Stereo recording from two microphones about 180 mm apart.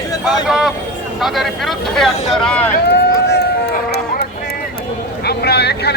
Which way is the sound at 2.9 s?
65° left (ahead or behind).